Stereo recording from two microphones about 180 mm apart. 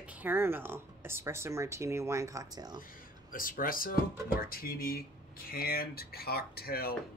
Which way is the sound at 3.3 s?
50° left (ahead or behind).